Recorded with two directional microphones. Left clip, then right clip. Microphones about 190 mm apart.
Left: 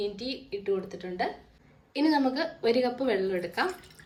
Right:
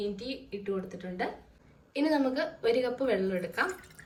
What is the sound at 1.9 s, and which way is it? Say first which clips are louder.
Speech: left 3 dB; centre (ahead or behind).